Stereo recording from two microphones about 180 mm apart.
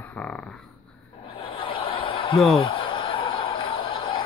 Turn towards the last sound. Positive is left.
turn(degrees=30)  # may be behind; listen again after turning